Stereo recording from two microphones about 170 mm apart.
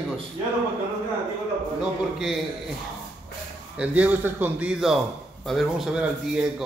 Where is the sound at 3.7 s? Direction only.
10° right (ahead or behind).